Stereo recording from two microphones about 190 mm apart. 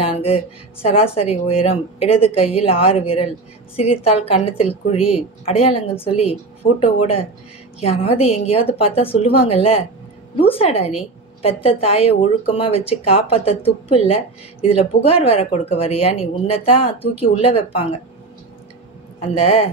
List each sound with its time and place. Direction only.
0.0 s speech: 30° left (ahead or behind)
19.1 s speech: 30° left (ahead or behind)